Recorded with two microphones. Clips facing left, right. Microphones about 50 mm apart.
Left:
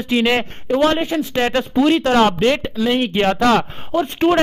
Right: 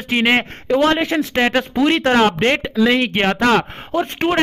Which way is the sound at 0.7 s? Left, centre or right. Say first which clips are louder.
Right 1 dB; right.